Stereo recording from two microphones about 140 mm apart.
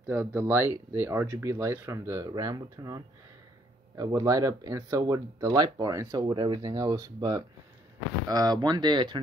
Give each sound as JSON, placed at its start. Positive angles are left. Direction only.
{"t": 0.0, "sound": "speech", "side_deg": -15}